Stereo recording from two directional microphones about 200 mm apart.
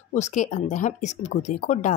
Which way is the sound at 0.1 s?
40° left (ahead or behind).